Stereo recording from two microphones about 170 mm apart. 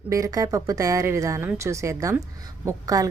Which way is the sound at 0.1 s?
20° right (ahead or behind).